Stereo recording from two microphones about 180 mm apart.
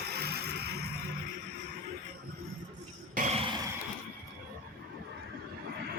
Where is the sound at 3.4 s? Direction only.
30° right (ahead or behind).